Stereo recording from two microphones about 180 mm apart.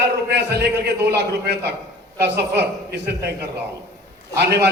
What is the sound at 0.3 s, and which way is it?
A man's voice, 65° right (ahead or behind).